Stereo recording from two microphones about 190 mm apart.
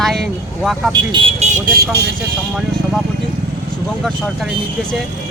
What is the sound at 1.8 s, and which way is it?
Speech, 60° right (ahead or behind).